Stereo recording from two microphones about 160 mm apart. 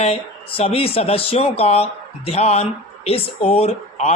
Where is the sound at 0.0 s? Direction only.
40° left (ahead or behind).